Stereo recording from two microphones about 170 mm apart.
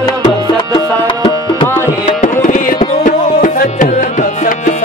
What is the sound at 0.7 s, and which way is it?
Tabla, 30° left (ahead or behind).